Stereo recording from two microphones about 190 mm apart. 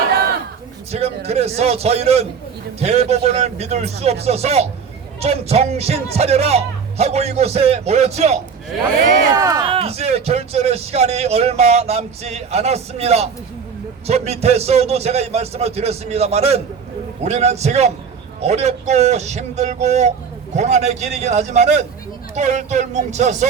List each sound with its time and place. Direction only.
0.9 s a man's voice: 35° right (ahead or behind)
9.3 s speech: 20° right (ahead or behind); by 23.5 s 40° right (ahead or behind)